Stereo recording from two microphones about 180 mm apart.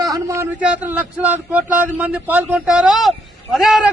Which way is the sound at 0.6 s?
10° right (ahead or behind).